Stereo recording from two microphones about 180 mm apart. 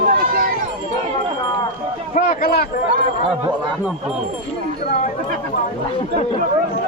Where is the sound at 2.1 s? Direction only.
55° left (ahead or behind).